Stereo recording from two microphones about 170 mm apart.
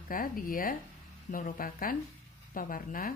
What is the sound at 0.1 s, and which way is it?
Speech, 55° left (ahead or behind).